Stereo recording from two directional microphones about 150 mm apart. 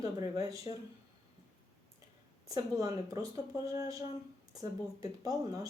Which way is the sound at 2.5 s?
25° right (ahead or behind).